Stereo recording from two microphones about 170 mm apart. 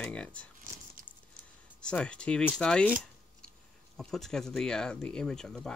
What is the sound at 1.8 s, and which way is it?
Speech, 5° left (ahead or behind).